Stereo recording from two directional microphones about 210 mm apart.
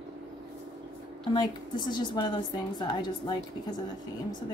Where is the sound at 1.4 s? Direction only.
20° left (ahead or behind).